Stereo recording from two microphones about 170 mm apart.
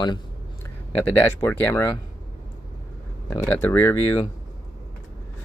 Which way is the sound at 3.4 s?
10° left (ahead or behind).